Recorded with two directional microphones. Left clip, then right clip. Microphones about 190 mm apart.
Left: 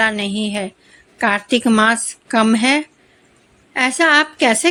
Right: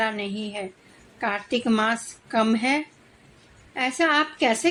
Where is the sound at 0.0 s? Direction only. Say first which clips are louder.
Left 9 dB; 30° left (ahead or behind).